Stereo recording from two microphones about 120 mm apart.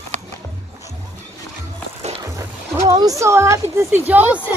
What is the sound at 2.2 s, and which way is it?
Music, 25° right (ahead or behind).